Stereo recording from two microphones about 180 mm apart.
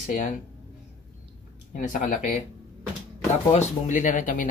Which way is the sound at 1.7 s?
50° left (ahead or behind).